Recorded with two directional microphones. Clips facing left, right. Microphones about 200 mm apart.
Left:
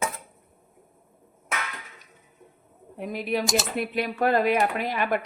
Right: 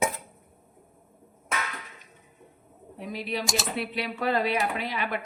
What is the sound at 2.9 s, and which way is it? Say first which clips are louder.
Speech: left 5 dB; 50° left (ahead or behind).